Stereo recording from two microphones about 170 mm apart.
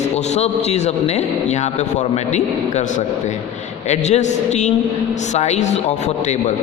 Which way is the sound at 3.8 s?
40° left (ahead or behind).